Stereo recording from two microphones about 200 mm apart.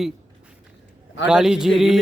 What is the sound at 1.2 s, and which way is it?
Speech, 5° right (ahead or behind).